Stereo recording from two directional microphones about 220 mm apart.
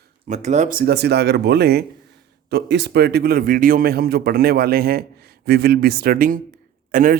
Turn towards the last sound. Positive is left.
turn(degrees=-40)  # may be behind; listen again after turning